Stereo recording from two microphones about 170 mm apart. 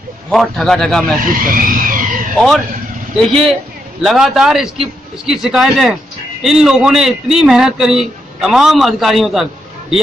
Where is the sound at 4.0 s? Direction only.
Centre (ahead or behind).